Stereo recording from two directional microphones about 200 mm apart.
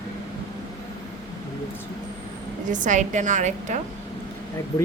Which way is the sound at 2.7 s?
40° right (ahead or behind).